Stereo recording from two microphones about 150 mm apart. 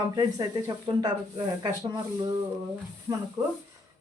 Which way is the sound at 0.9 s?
30° right (ahead or behind).